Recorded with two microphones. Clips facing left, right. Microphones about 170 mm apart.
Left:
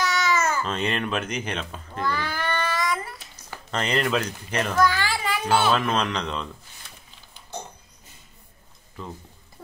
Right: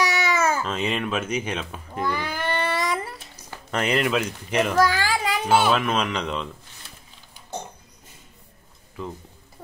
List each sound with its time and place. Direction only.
0.0 s baby cry: 60° right (ahead or behind)
0.6 s cat: 5° right (ahead or behind); by 3.2 s 30° right (ahead or behind)
3.7 s speech: 5° right (ahead or behind)
4.7 s a sound: 40° right (ahead or behind)
5.7 s speech: 5° right (ahead or behind)